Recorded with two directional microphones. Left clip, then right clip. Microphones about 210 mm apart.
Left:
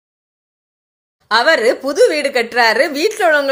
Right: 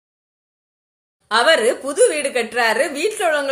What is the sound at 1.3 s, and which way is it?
A woman's voice, 40° left (ahead or behind).